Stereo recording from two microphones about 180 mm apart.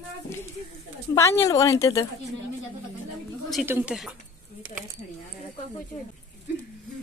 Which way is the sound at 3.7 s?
10° right (ahead or behind).